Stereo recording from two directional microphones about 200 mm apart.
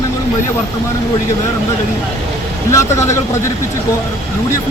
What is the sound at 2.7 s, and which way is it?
Speech, 15° left (ahead or behind).